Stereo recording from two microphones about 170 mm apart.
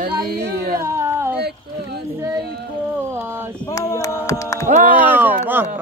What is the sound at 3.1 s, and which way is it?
Speech, 15° right (ahead or behind).